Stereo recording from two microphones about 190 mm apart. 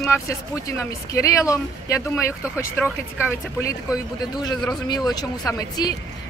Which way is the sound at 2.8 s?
Centre (ahead or behind).